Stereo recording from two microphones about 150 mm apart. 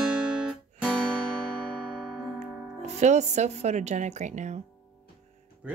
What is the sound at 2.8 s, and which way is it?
A woman's voice, 50° right (ahead or behind).